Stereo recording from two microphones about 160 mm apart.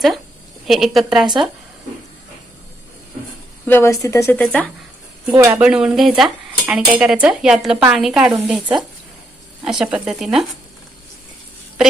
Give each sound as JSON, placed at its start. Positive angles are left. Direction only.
{"t": 0.6, "sound": "speech", "side_deg": 0}
{"t": 3.7, "sound": "a woman's voice", "side_deg": 15}
{"t": 5.3, "sound": "speech", "side_deg": -20}
{"t": 5.5, "sound": "speech", "side_deg": -5}